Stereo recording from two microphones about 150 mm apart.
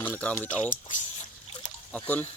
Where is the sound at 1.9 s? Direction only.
10° left (ahead or behind).